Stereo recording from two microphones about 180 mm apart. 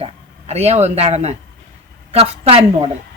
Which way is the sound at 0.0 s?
35° right (ahead or behind).